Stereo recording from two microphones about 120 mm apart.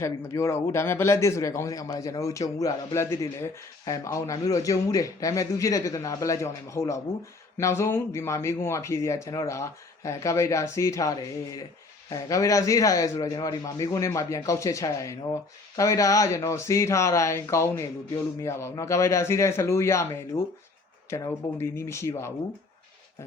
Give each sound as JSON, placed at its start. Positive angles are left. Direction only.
{"t": 0.0, "sound": "speech", "side_deg": 25}